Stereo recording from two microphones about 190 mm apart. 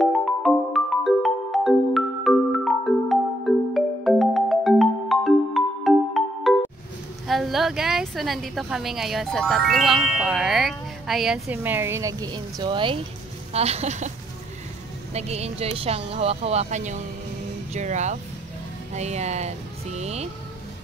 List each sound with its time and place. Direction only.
0.0 s music: centre (ahead or behind)
7.2 s a woman's voice: centre (ahead or behind); by 14.1 s 35° right (ahead or behind)
15.1 s speech: 35° right (ahead or behind)